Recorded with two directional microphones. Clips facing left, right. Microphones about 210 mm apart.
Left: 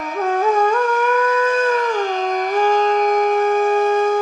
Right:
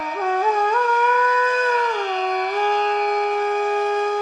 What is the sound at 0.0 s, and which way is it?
Music, 45° left (ahead or behind).